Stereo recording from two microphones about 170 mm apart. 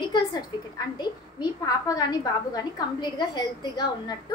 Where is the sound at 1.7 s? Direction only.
20° left (ahead or behind).